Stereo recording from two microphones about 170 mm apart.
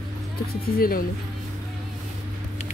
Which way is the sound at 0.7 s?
60° left (ahead or behind).